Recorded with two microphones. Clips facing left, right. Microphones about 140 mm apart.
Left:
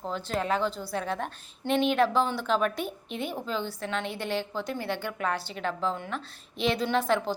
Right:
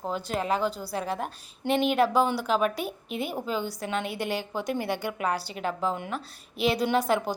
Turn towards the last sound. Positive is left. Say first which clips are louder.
# right 1 dB
turn(degrees=-10)  # may be behind; listen again after turning